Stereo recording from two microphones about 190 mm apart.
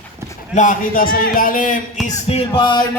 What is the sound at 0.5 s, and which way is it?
A man's voice, 40° left (ahead or behind).